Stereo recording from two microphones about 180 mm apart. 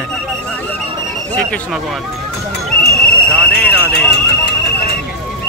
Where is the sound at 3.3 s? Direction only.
10° left (ahead or behind).